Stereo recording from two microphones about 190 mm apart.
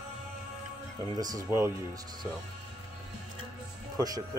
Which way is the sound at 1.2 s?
20° right (ahead or behind).